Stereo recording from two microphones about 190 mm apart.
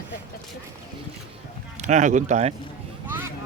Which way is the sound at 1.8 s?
40° right (ahead or behind).